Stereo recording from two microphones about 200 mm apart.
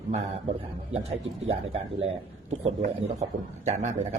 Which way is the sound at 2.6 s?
30° right (ahead or behind).